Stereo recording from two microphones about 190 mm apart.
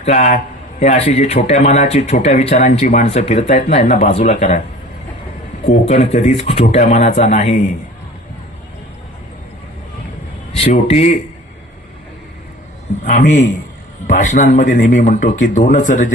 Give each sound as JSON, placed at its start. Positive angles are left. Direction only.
{"t": 0.0, "sound": "a man's voice", "side_deg": 35}
{"t": 5.8, "sound": "a man's voice", "side_deg": 35}
{"t": 10.6, "sound": "a man's voice", "side_deg": 35}
{"t": 13.1, "sound": "a man's voice", "side_deg": 40}